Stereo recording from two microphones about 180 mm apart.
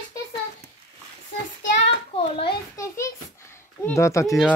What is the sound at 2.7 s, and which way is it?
Speech, 15° left (ahead or behind).